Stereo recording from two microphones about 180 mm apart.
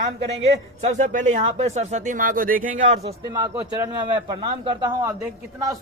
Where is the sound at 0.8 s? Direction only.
40° right (ahead or behind).